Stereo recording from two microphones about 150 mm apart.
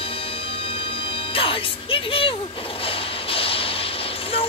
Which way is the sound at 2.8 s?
40° left (ahead or behind).